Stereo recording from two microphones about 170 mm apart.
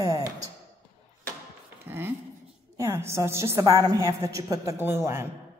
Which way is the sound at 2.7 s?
15° right (ahead or behind).